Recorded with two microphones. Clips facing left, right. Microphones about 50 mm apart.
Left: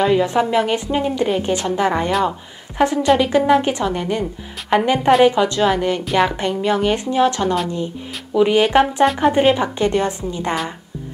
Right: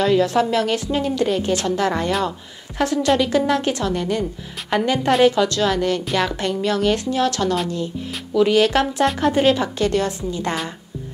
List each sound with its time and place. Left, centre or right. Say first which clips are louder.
0.0 s a woman's voice: left 1 dB; centre